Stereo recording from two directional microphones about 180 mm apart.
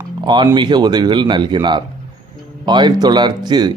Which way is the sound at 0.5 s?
25° right (ahead or behind).